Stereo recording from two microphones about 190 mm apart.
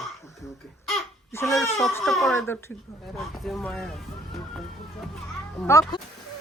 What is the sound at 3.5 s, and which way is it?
Speech, 5° left (ahead or behind).